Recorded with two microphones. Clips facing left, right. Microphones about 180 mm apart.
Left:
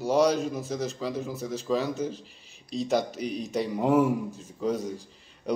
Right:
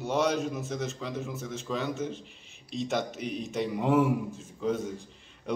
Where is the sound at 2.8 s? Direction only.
Centre (ahead or behind).